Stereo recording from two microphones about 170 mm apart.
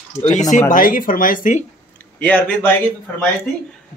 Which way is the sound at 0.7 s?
55° left (ahead or behind).